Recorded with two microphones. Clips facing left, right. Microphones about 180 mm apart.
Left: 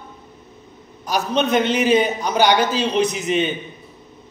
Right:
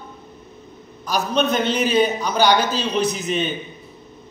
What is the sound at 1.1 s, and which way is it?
A man's voice, 20° left (ahead or behind).